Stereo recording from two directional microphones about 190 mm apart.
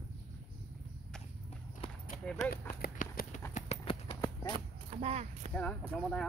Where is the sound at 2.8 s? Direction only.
45° left (ahead or behind).